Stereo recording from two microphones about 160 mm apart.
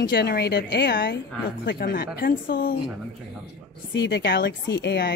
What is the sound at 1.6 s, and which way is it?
A woman's voice, 80° left.